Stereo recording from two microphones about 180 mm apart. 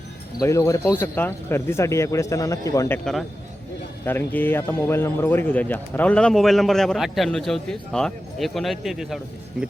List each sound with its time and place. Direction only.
0.4 s speech: 15° left (ahead or behind)
3.0 s speech: centre (ahead or behind)